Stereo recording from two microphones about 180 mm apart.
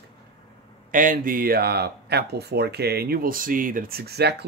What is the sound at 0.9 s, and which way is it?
Speech, 45° right (ahead or behind).